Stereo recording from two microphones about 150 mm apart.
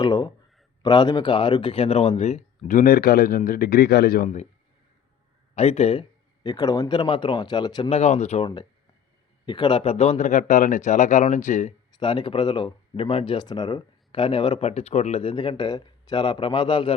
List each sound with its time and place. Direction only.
0.0 s speech: 30° left (ahead or behind); by 4.3 s 90° left
5.5 s speech: 45° left (ahead or behind)
6.4 s speech: 25° left (ahead or behind)
7.9 s speech: 45° left (ahead or behind)
9.5 s speech: 30° left (ahead or behind); by 11.7 s 55° left (ahead or behind)
11.9 s speech: 35° left (ahead or behind)